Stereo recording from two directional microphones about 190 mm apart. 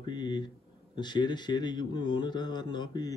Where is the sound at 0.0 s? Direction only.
25° left (ahead or behind).